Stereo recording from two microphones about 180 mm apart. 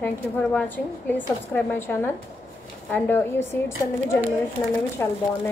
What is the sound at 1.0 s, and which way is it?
Speech, 10° left (ahead or behind).